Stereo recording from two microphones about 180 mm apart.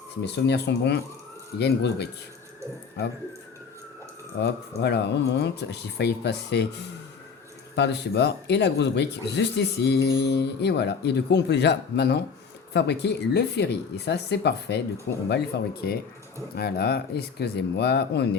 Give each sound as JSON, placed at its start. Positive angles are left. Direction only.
{"t": 0.2, "sound": "speech", "side_deg": 75}
{"t": 4.4, "sound": "speech", "side_deg": 70}
{"t": 7.8, "sound": "speech", "side_deg": 70}